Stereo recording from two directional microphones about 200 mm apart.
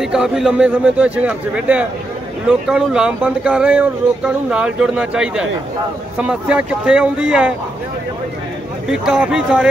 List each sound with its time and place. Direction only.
0.0 s speech: centre (ahead or behind)
8.8 s speech: 5° right (ahead or behind)